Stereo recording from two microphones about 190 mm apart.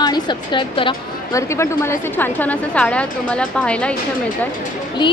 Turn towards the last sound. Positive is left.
turn(degrees=5)  # may be behind; listen again after turning